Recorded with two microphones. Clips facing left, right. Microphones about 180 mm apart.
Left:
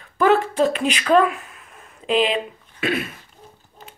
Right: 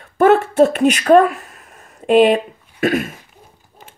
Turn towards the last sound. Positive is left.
turn(degrees=-45)  # may be behind; listen again after turning